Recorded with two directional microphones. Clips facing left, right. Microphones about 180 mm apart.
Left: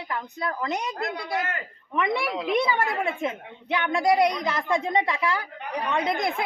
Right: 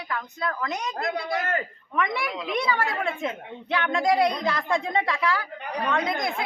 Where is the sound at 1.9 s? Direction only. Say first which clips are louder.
Left 2 dB; 25° left (ahead or behind).